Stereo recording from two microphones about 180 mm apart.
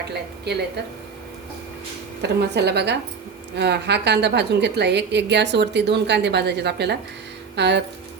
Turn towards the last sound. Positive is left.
turn(degrees=-70)  # may be behind; listen again after turning